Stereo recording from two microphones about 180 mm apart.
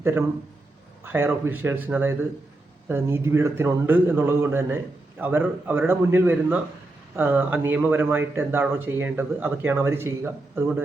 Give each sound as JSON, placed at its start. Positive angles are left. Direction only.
{"t": 0.0, "sound": "a man's voice", "side_deg": -15}